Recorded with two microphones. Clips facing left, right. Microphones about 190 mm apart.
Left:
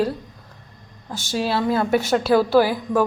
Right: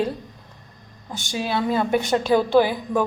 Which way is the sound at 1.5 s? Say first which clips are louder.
Even; centre (ahead or behind).